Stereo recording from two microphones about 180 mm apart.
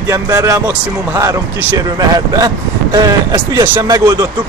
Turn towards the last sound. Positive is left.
turn(degrees=-20)  # may be behind; listen again after turning